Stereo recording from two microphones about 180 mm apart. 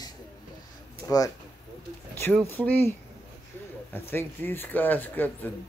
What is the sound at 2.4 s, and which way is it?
Speech, 10° left (ahead or behind).